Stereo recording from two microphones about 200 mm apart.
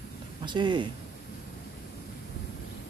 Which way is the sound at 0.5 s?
25° right (ahead or behind).